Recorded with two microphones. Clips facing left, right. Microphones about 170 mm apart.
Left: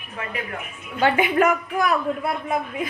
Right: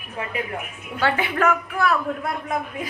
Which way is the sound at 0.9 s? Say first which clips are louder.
Left 4 dB; 15° left (ahead or behind).